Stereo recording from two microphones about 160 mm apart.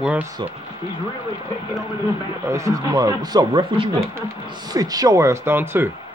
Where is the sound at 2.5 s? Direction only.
20° right (ahead or behind).